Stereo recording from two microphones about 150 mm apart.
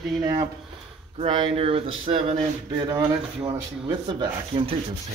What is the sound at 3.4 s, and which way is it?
Speech, 30° right (ahead or behind).